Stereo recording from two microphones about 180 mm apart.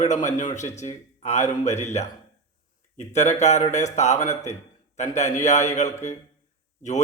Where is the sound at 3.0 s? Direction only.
40° left (ahead or behind).